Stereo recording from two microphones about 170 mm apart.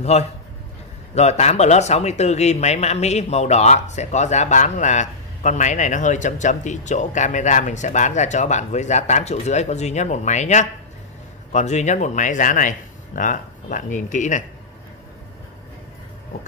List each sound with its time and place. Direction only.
0.0 s a man's voice: 40° left (ahead or behind)